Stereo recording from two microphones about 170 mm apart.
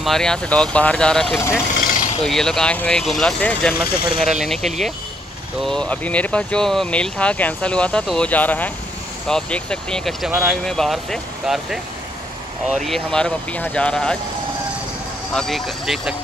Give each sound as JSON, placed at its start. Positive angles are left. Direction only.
{"t": 0.0, "sound": "speech", "side_deg": 0}
{"t": 1.8, "sound": "a sound", "side_deg": 55}
{"t": 2.2, "sound": "speech", "side_deg": 5}
{"t": 3.8, "sound": "speech", "side_deg": 65}
{"t": 4.4, "sound": "speech", "side_deg": 0}
{"t": 15.3, "sound": "speech", "side_deg": 0}